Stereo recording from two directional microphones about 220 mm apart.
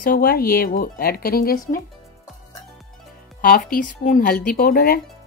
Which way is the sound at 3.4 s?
40° left (ahead or behind).